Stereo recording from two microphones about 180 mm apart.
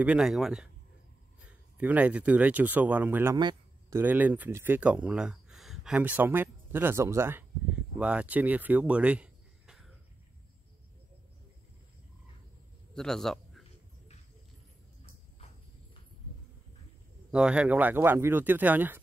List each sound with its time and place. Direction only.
0.0 s speech: 5° right (ahead or behind)
3.3 s a sound: 25° right (ahead or behind)
4.0 s speech: 10° right (ahead or behind)
12.9 s a man's voice: 5° left (ahead or behind)
17.3 s speech: 5° right (ahead or behind)